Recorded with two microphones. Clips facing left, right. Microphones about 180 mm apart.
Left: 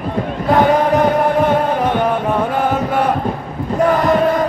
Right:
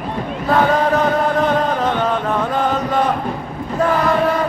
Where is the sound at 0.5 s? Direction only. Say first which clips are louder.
Left 3 dB; 15° left (ahead or behind).